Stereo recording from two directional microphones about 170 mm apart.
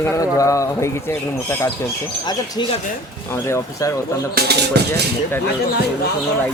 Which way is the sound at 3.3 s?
15° left (ahead or behind).